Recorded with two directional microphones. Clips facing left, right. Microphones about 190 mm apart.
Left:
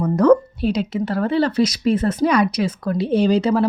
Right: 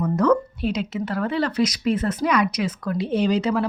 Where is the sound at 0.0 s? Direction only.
35° left (ahead or behind).